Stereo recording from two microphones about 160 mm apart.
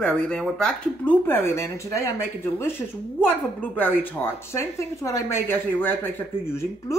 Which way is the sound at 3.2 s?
10° left (ahead or behind).